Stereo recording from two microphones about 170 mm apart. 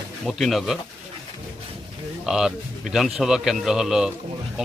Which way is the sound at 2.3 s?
5° right (ahead or behind).